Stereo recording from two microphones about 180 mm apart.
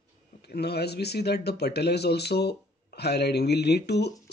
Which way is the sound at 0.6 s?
65° left (ahead or behind).